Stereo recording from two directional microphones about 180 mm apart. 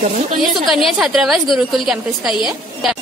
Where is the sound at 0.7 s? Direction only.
Centre (ahead or behind).